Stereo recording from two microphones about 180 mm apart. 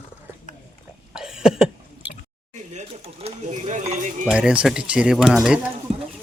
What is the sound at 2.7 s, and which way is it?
Speech, 40° right (ahead or behind).